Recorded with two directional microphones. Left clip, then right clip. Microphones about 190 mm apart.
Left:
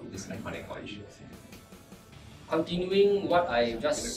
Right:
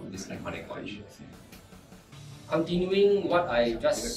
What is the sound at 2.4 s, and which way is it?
A man's voice, centre (ahead or behind).